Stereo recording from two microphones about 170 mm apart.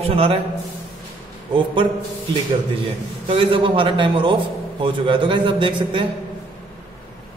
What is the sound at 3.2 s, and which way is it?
A man's voice, 30° right (ahead or behind).